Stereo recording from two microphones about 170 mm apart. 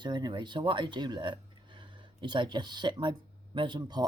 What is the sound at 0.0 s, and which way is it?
Speech, 25° right (ahead or behind).